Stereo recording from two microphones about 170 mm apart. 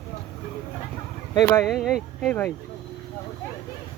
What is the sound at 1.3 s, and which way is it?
Speech, 20° left (ahead or behind).